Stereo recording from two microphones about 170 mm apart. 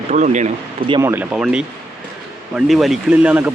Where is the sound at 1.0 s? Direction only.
10° right (ahead or behind).